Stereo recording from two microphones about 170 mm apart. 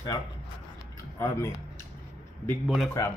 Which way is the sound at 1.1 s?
15° left (ahead or behind).